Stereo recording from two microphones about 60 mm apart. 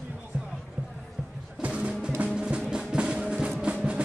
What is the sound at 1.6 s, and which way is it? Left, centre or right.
Music, centre.